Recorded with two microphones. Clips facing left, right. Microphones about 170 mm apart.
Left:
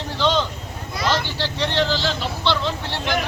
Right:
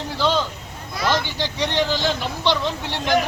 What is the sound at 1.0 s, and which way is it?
A man's voice, 15° right (ahead or behind).